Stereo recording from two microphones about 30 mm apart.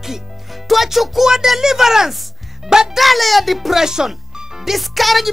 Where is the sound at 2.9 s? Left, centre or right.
Centre.